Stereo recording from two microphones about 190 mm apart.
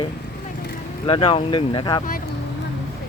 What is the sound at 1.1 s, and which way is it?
Speech, 30° left (ahead or behind).